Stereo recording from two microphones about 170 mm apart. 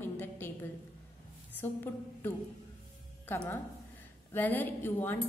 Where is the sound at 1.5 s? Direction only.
10° left (ahead or behind).